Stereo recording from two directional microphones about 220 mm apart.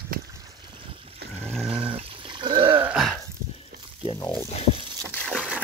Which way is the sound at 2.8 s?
5° right (ahead or behind).